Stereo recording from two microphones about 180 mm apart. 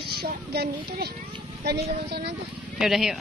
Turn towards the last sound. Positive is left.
turn(degrees=0)  # may be behind; listen again after turning